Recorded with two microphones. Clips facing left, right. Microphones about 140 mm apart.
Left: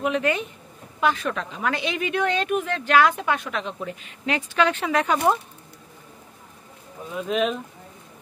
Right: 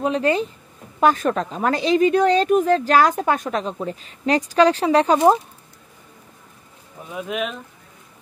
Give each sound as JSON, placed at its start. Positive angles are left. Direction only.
{"t": 0.0, "sound": "speech", "side_deg": -35}
{"t": 7.2, "sound": "speech", "side_deg": -10}